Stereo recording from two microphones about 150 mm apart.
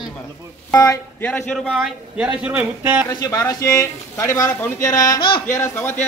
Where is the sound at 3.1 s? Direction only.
20° left (ahead or behind).